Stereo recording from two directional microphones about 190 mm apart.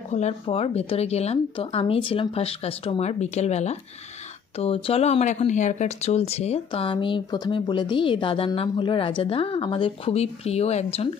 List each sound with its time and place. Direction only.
0.1 s speech: 35° left (ahead or behind)